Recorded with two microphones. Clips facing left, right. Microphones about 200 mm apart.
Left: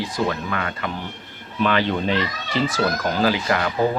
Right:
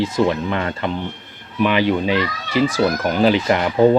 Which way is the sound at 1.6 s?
15° right (ahead or behind).